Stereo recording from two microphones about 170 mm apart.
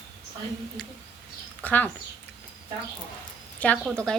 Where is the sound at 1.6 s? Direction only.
10° left (ahead or behind).